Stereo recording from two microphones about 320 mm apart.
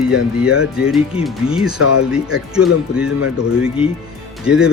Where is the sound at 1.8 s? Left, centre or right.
Left.